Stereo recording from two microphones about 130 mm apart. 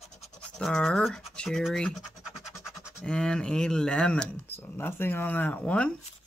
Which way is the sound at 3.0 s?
5° left (ahead or behind).